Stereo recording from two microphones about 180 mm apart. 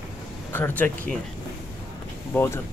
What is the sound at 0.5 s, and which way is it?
Speech, 10° left (ahead or behind).